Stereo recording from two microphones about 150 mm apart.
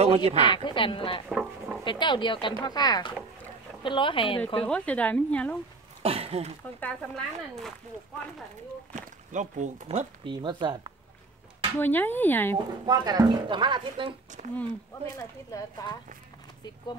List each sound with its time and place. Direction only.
0.0 s speech: 45° right (ahead or behind)
0.5 s speech: 35° left (ahead or behind)
1.3 s a sound: 5° right (ahead or behind)
1.9 s speech: 30° left (ahead or behind)
4.6 s speech: 5° left (ahead or behind)
6.0 s speech: 40° right (ahead or behind)
6.8 s speech: 5° left (ahead or behind)
8.9 s speech: 55° right (ahead or behind)
10.2 s speech: 30° right (ahead or behind)
11.8 s speech: 10° left (ahead or behind)
12.5 s speech: 25° right (ahead or behind)
14.4 s speech: 55° right (ahead or behind)
15.1 s speech: 20° left (ahead or behind)